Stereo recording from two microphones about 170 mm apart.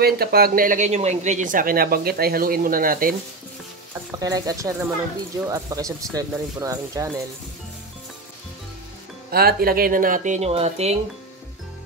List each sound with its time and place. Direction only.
0.0 s speech: 65° right (ahead or behind)
4.2 s speech: 20° right (ahead or behind)
9.3 s speech: 65° right (ahead or behind); by 11.0 s 40° right (ahead or behind)